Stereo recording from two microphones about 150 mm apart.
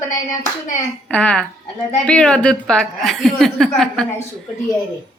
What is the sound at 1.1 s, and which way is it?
A woman's voice, 5° left (ahead or behind).